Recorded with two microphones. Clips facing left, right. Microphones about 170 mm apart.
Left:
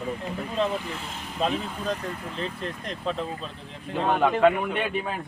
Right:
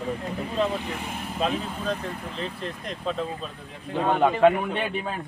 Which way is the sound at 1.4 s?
5° right (ahead or behind).